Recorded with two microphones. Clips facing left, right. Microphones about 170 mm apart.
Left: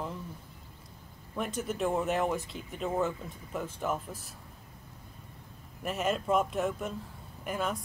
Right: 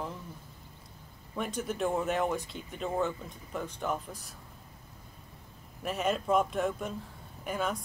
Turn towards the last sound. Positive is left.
turn(degrees=0)  # may be behind; listen again after turning